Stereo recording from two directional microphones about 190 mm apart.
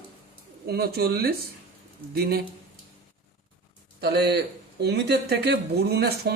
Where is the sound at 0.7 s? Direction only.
55° right (ahead or behind).